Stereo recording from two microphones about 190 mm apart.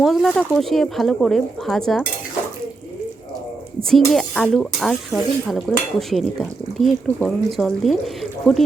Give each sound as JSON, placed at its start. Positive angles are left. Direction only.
{"t": 0.0, "sound": "speech", "side_deg": 0}
{"t": 3.8, "sound": "speech", "side_deg": 0}